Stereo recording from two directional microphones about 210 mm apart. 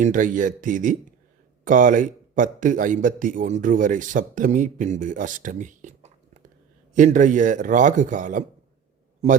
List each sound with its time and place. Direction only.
0.0 s speech: 40° right (ahead or behind)